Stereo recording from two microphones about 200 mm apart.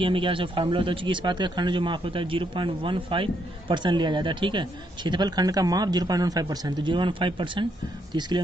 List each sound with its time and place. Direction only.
0.0 s speech: 25° right (ahead or behind)